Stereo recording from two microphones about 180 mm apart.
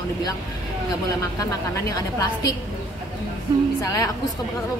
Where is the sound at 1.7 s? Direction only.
20° left (ahead or behind).